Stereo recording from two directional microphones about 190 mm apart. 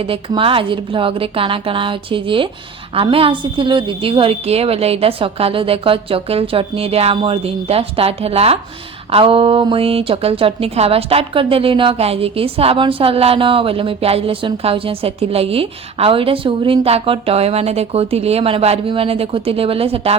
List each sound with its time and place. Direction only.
0.0 s a woman's voice: 30° right (ahead or behind)